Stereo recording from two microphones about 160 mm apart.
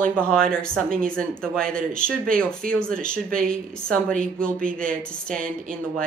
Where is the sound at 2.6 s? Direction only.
60° right (ahead or behind).